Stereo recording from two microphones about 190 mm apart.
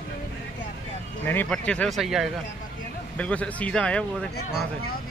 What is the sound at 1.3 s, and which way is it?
Speech, 5° left (ahead or behind).